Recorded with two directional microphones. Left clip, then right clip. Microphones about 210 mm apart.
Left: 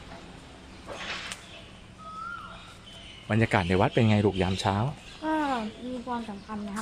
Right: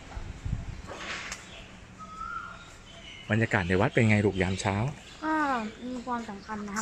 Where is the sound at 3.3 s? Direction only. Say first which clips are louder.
Left 1 dB; centre (ahead or behind).